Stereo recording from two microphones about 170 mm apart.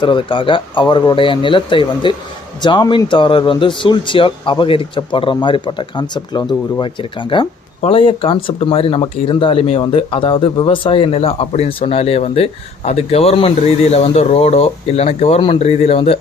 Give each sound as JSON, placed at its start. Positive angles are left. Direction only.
{"t": 0.0, "sound": "speech", "side_deg": 30}